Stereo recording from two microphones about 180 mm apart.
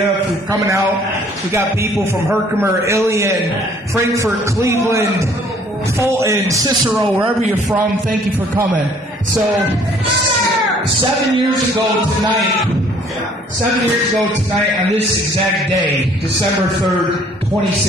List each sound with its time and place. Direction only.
0.5 s a man's voice: 15° right (ahead or behind)
7.7 s a man's voice: 10° right (ahead or behind)